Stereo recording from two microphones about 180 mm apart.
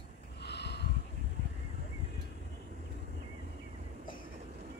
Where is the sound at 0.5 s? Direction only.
70° left (ahead or behind).